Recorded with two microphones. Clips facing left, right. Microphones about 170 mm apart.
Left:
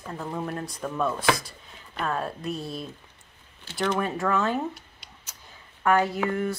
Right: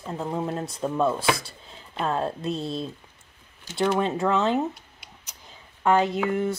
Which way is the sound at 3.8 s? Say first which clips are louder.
Right 3 dB; 20° right (ahead or behind).